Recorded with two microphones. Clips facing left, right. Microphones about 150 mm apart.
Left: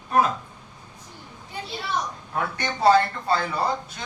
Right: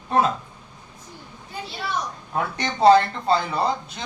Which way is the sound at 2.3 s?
20° right (ahead or behind).